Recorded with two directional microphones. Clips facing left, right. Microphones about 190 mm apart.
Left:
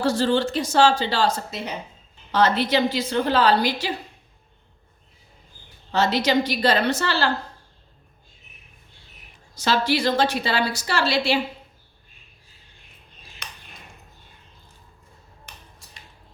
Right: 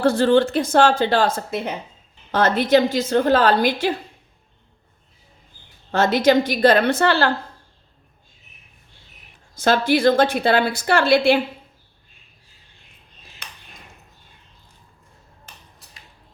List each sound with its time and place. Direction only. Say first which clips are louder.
0.0 s a woman's voice: right 5 dB; 55° right (ahead or behind)
5.9 s a woman's voice: right 5 dB; 50° right (ahead or behind)
9.6 s a woman's voice: right 4 dB; 50° right (ahead or behind)